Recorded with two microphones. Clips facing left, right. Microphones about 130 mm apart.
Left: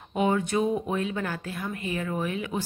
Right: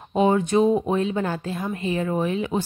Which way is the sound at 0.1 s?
30° right (ahead or behind).